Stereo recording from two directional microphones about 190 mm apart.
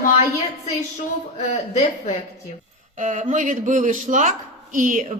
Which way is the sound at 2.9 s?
40° right (ahead or behind).